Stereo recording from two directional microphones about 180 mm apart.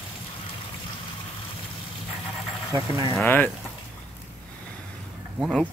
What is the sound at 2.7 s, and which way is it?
Speech, 20° right (ahead or behind).